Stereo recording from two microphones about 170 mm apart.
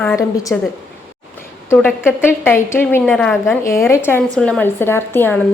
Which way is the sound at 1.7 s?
10° left (ahead or behind).